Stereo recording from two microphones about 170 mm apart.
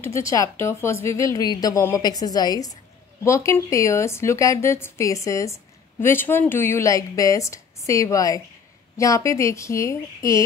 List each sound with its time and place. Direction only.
0.3 s a woman's voice: 15° left (ahead or behind)